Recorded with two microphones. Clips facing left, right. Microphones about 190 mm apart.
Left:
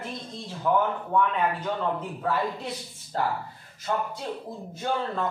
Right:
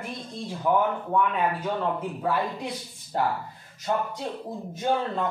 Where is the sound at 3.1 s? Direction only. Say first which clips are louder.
Right 1 dB; 15° right (ahead or behind).